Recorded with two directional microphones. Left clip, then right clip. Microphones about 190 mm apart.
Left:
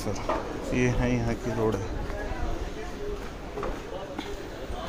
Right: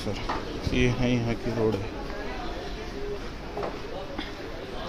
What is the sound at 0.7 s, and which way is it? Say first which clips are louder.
Speech: right 1 dB; 15° right (ahead or behind).